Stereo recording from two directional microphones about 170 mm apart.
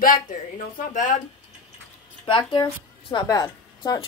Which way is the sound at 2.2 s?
25° left (ahead or behind).